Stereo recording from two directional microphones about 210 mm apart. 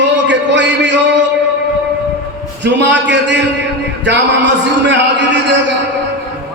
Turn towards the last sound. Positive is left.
turn(degrees=-60)  # may be behind; listen again after turning